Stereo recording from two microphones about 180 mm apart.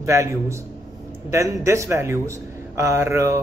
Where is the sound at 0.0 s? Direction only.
15° right (ahead or behind).